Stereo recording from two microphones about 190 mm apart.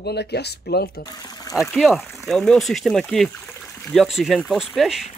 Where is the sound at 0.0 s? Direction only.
60° left (ahead or behind).